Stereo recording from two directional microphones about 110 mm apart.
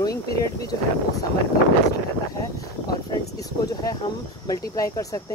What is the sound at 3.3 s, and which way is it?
Speech, 35° left (ahead or behind).